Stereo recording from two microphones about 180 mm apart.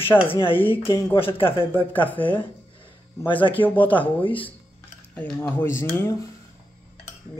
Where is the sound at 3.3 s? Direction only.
30° left (ahead or behind).